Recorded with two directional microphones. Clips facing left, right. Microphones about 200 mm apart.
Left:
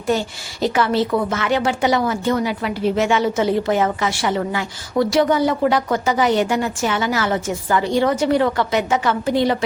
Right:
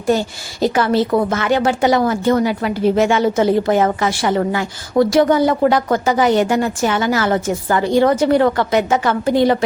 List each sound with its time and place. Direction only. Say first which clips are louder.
0.6 s a woman's voice: right 3 dB; 45° right (ahead or behind)